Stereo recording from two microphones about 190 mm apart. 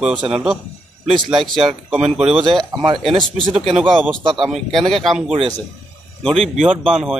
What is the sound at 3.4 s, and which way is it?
Speech, 30° right (ahead or behind).